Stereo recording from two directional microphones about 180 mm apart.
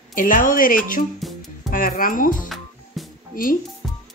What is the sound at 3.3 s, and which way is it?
Speech, 50° left (ahead or behind).